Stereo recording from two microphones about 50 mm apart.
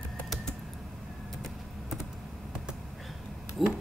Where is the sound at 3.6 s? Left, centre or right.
Centre.